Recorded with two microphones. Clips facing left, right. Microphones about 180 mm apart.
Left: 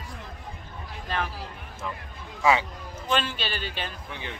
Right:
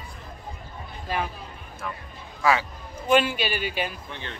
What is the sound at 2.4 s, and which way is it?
Speech, 20° left (ahead or behind).